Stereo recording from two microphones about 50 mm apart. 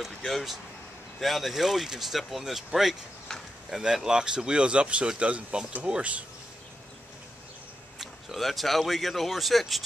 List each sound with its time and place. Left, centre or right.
0.0 s speech: centre
3.3 s a sound: centre
3.7 s speech: centre
8.0 s speech: centre